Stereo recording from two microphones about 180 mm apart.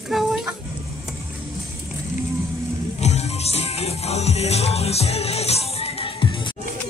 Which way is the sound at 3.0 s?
35° left (ahead or behind).